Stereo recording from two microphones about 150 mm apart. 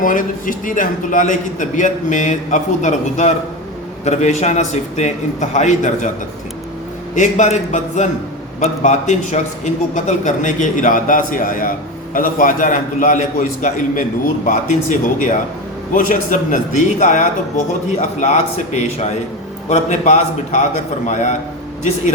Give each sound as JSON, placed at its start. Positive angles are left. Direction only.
{"t": 0.0, "sound": "a man's voice", "side_deg": 65}
{"t": 7.2, "sound": "a man's voice", "side_deg": 50}